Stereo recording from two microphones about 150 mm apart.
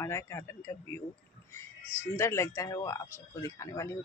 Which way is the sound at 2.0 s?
15° left (ahead or behind).